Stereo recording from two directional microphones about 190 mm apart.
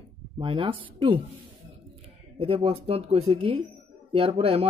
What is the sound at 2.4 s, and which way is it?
Speech, 30° right (ahead or behind).